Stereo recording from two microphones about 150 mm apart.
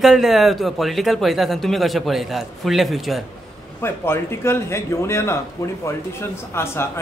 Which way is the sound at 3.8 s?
15° left (ahead or behind).